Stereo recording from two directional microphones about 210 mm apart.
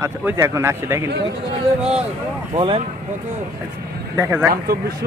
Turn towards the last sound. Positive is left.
turn(degrees=-10)  # may be behind; listen again after turning